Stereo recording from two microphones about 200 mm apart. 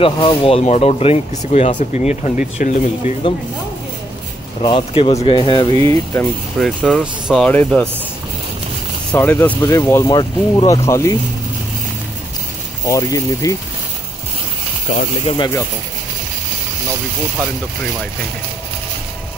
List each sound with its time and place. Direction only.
0.0 s speech: 25° left (ahead or behind)
4.6 s speech: 25° left (ahead or behind)
5.7 s speech: 30° right (ahead or behind)
6.6 s speech: centre (ahead or behind)
9.1 s speech: 10° left (ahead or behind)
12.8 s speech: 15° left (ahead or behind)
15.2 s speech: 20° left (ahead or behind)